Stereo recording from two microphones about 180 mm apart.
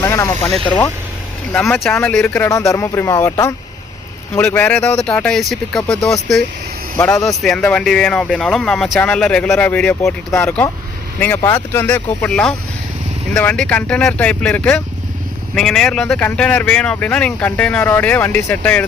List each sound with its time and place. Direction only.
0.0 s speech: 15° left (ahead or behind)
1.5 s speech: 5° left (ahead or behind)
2.5 s speech: 15° left (ahead or behind)